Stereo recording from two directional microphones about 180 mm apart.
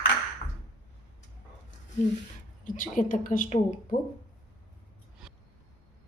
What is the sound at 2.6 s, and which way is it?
A woman's voice, 45° left (ahead or behind).